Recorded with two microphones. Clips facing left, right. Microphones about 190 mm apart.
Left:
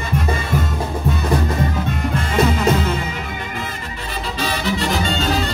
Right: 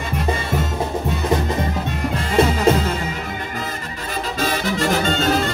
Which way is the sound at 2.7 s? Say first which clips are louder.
Right 3 dB; 30° right (ahead or behind).